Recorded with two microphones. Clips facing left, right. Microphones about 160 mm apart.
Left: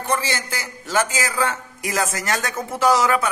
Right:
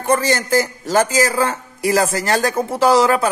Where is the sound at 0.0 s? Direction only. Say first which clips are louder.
Right 7 dB; 45° right (ahead or behind).